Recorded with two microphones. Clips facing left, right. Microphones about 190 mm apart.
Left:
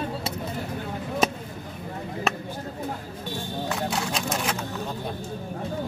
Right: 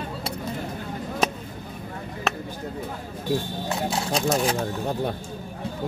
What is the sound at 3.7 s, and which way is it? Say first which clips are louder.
Speech: right 4 dB; 30° right (ahead or behind).